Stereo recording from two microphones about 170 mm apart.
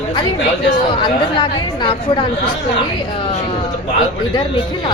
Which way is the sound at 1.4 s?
30° left (ahead or behind).